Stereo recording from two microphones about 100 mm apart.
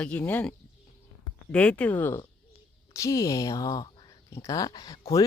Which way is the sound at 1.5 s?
15° left (ahead or behind).